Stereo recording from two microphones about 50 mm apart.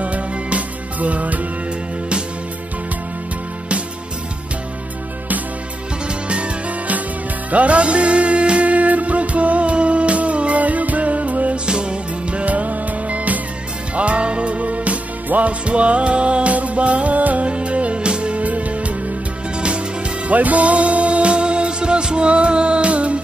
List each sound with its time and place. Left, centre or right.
0.0 s music: right
6.0 s music: right
20.2 s music: right